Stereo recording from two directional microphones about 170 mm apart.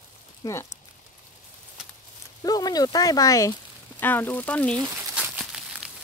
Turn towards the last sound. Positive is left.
turn(degrees=-5)  # may be behind; listen again after turning